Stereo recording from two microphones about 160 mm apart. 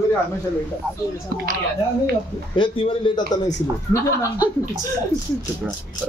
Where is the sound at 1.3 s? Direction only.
65° right (ahead or behind).